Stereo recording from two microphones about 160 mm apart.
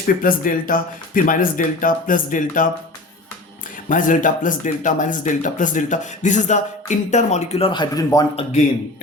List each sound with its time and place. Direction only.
0.2 s speech: 60° left (ahead or behind)
3.8 s speech: 55° left (ahead or behind)
7.7 s speech: 25° left (ahead or behind)